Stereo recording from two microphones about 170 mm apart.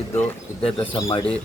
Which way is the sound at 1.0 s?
20° left (ahead or behind).